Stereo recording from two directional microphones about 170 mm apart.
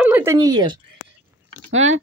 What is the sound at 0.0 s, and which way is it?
Speech, 10° right (ahead or behind).